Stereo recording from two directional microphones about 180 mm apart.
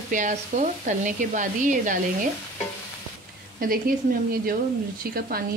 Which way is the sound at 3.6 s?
50° right (ahead or behind).